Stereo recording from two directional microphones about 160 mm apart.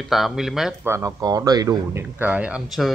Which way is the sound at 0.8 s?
20° right (ahead or behind).